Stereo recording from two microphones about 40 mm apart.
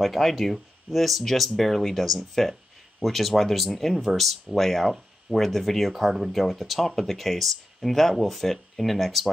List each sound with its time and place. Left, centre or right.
0.0 s speech: centre